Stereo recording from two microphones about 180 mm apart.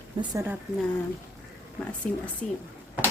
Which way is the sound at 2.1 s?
5° left (ahead or behind).